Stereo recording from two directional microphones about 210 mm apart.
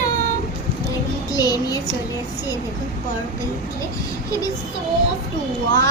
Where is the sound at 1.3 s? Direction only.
20° left (ahead or behind).